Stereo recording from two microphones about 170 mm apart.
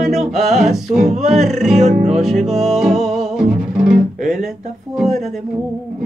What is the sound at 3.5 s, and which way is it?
Music, 55° right (ahead or behind).